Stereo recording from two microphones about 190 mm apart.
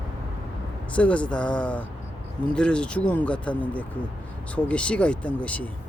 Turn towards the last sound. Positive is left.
turn(degrees=5)  # may be behind; listen again after turning